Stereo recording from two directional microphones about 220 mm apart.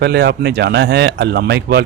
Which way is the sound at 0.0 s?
50° right (ahead or behind).